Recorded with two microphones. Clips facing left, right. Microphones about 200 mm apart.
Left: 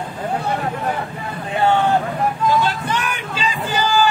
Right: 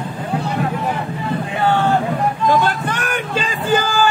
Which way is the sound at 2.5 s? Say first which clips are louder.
Right 2 dB; 50° right (ahead or behind).